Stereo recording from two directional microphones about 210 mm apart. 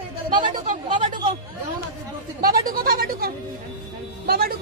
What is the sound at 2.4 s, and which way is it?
Speech, 45° right (ahead or behind).